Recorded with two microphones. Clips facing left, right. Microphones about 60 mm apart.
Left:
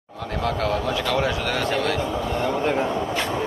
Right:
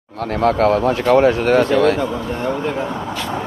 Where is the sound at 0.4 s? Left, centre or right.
Right.